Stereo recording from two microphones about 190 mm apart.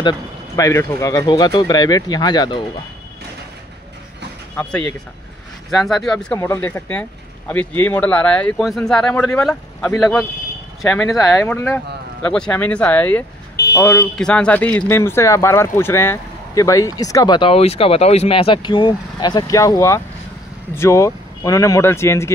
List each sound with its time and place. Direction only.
0.6 s speech: 15° left (ahead or behind)
4.6 s speech: 5° left (ahead or behind)